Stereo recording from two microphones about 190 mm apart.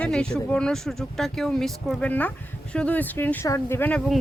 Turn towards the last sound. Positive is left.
turn(degrees=10)  # may be behind; listen again after turning